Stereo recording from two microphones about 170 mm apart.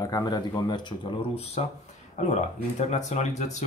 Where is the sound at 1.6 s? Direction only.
35° left (ahead or behind).